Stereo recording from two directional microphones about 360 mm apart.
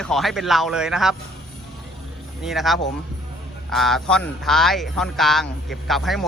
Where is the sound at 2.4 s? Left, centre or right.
Centre.